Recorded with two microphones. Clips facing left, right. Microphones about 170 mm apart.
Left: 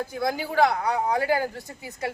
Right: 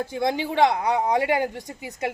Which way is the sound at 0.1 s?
25° right (ahead or behind).